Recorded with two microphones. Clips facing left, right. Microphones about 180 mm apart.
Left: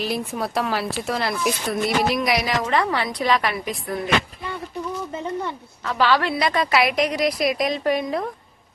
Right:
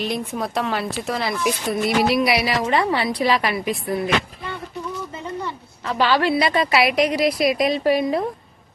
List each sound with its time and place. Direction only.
0.0 s speech: centre (ahead or behind)
5.8 s a woman's voice: 30° right (ahead or behind)
6.1 s speech: centre (ahead or behind)